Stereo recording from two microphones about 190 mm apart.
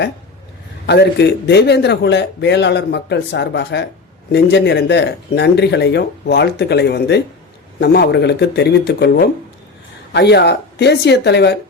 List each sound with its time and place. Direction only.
0.9 s a man's voice: 60° left (ahead or behind)